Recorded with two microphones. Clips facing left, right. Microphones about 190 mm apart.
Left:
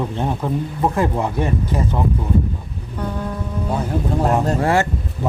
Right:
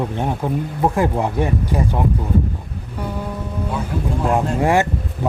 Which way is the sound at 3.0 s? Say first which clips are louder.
Left 1 dB; 10° right (ahead or behind).